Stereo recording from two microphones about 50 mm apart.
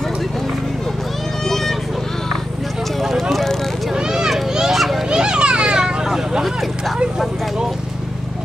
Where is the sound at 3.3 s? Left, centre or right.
Centre.